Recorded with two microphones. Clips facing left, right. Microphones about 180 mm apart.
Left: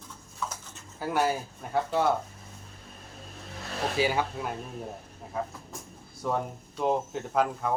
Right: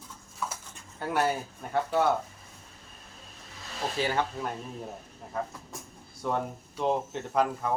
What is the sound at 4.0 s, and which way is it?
Speech, 10° left (ahead or behind).